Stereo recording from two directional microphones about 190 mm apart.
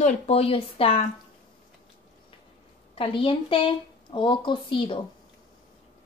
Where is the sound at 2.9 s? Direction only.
30° left (ahead or behind).